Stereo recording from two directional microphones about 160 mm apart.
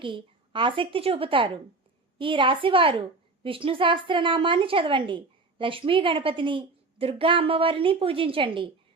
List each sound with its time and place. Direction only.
0.0 s a woman's voice: 30° right (ahead or behind)